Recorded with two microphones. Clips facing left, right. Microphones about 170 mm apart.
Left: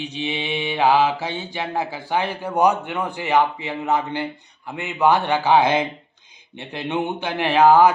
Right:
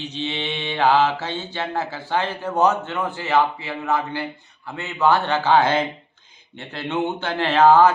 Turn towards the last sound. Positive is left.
turn(degrees=15)  # may be behind; listen again after turning